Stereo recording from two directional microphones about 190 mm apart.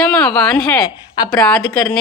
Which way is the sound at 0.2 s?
5° left (ahead or behind).